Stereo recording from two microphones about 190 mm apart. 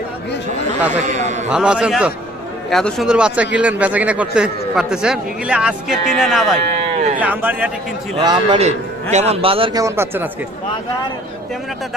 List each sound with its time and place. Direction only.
1.0 s a sound: 40° right (ahead or behind)
1.5 s a man's voice: 5° right (ahead or behind)
8.2 s a man's voice: 20° right (ahead or behind)
8.6 s a man's voice: 35° right (ahead or behind)
9.8 s a man's voice: 10° right (ahead or behind)